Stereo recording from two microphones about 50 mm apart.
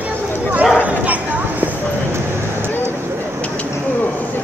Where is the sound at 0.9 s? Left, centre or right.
Right.